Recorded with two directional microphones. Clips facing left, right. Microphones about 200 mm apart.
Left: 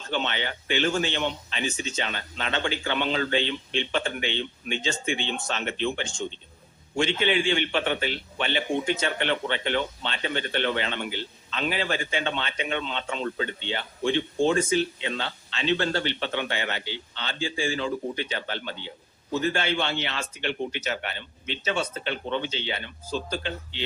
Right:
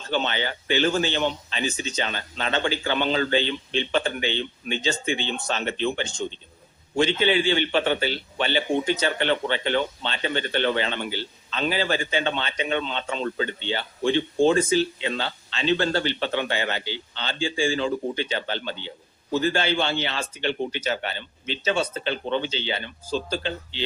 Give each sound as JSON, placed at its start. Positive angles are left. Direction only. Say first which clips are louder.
{"t": 0.1, "sound": "a man's voice", "louder": "right 3 dB", "side_deg": -35}